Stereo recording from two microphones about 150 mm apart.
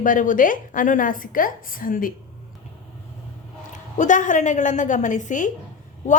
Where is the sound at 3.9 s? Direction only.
55° left (ahead or behind).